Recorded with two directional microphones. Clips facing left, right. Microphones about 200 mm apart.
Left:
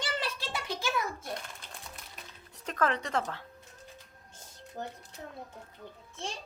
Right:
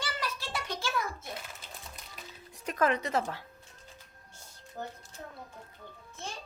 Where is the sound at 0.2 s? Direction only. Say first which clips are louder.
Left 1 dB; 25° left (ahead or behind).